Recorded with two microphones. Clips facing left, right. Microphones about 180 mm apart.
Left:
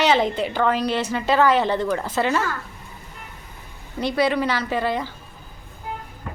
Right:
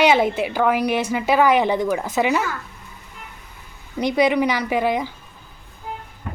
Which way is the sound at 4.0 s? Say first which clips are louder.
Right 3 dB; 15° right (ahead or behind).